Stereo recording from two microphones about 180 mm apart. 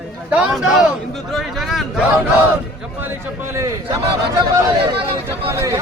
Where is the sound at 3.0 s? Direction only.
15° right (ahead or behind).